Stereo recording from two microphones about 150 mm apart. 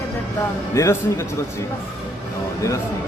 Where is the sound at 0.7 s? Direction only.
20° left (ahead or behind).